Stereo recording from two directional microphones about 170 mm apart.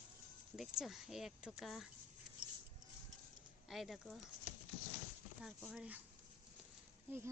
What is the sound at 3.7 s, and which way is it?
Speech, centre (ahead or behind).